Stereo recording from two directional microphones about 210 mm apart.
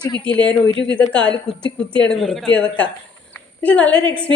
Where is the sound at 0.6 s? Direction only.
60° left (ahead or behind).